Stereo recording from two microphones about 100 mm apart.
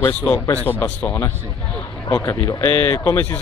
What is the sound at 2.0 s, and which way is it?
Speech, 35° left (ahead or behind).